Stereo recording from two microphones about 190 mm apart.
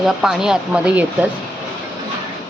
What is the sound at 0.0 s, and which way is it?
Speech, centre (ahead or behind).